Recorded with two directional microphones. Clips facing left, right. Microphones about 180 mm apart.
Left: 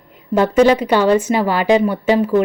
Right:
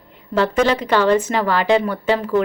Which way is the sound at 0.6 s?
10° left (ahead or behind).